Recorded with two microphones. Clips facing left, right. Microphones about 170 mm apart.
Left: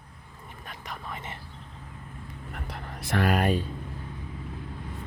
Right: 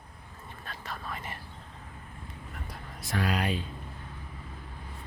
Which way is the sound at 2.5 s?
65° left (ahead or behind).